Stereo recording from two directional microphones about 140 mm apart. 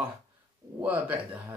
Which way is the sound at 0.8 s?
10° right (ahead or behind).